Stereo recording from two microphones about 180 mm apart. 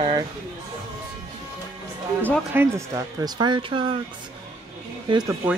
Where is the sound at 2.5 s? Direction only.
15° right (ahead or behind).